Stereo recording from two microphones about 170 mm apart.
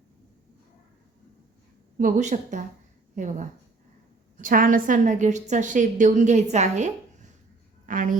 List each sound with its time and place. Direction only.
2.0 s a woman's voice: 45° right (ahead or behind)